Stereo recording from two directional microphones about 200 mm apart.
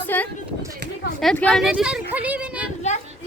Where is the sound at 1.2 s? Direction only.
Centre (ahead or behind).